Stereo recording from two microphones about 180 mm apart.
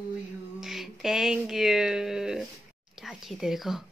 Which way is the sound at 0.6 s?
Centre (ahead or behind).